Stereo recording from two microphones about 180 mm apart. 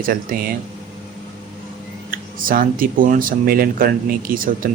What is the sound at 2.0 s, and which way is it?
Speech, 50° right (ahead or behind).